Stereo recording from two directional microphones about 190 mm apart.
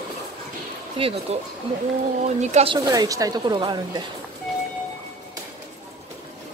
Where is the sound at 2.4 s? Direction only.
35° right (ahead or behind).